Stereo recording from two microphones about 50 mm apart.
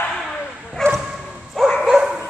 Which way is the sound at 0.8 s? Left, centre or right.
Centre.